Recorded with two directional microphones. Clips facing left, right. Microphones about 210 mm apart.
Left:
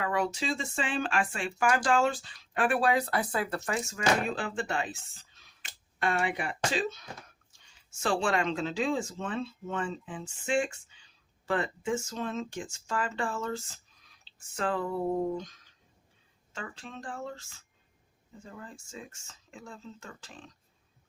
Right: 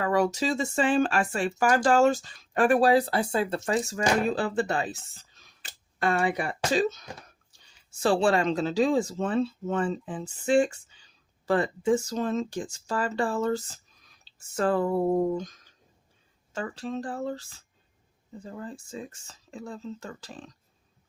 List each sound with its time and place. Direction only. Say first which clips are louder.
0.0 s speech: right 6 dB; 40° right (ahead or behind)